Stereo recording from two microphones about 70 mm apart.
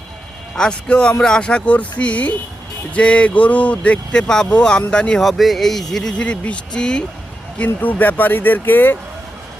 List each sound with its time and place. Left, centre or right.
0.5 s speech: centre
5.2 s speech: centre
7.6 s speech: left